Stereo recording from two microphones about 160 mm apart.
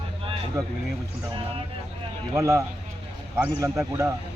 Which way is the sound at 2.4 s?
20° right (ahead or behind).